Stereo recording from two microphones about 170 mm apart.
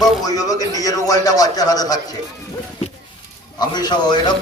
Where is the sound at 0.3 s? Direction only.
20° left (ahead or behind).